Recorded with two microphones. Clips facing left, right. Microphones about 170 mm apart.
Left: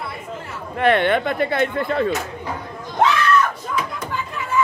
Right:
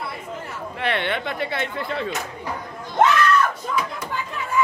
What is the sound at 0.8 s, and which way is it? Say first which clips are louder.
Speech: left 8 dB; 50° left (ahead or behind).